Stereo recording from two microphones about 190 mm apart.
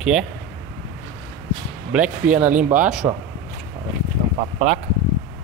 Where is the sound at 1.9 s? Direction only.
5° right (ahead or behind).